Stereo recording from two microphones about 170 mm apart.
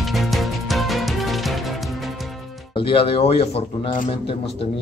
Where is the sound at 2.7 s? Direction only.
30° left (ahead or behind).